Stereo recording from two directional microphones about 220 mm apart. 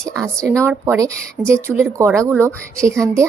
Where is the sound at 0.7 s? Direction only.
10° right (ahead or behind).